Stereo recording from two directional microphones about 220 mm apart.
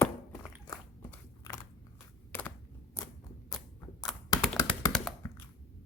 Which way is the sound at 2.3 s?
10° left (ahead or behind).